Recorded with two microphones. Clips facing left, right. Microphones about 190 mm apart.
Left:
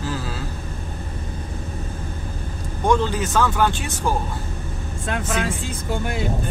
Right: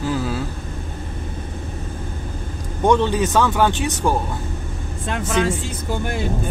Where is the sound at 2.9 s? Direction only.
20° right (ahead or behind).